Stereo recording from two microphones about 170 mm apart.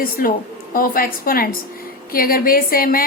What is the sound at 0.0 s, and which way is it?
A woman's voice, 55° left (ahead or behind).